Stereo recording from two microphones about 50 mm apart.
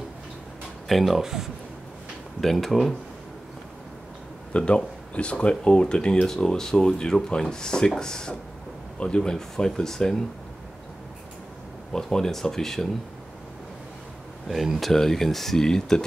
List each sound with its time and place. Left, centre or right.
0.8 s speech: centre
1.2 s speech: centre
2.4 s speech: centre
4.5 s speech: left
11.9 s speech: centre
14.5 s speech: centre